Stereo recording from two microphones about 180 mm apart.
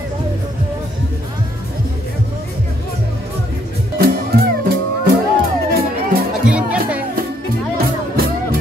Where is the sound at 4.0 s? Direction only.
55° right (ahead or behind).